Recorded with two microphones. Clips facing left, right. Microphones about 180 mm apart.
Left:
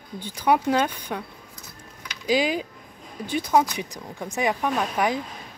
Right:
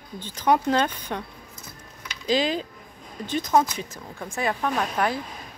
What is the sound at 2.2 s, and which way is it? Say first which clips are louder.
A woman's voice: left 1 dB; 10° left (ahead or behind).